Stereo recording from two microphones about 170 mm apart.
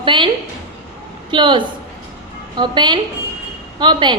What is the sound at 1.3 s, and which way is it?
A woman's voice, 30° right (ahead or behind).